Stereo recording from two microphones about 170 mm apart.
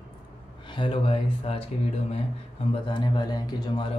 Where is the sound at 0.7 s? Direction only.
30° left (ahead or behind).